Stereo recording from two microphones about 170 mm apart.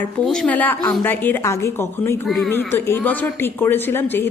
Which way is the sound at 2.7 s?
15° left (ahead or behind).